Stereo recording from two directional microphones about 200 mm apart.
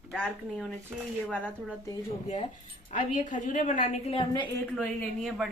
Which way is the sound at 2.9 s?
40° left (ahead or behind).